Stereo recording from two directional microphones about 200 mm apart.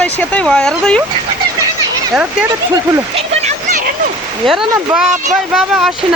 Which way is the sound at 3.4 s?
40° right (ahead or behind).